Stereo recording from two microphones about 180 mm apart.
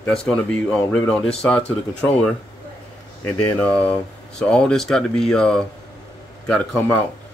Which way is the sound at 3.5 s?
5° left (ahead or behind).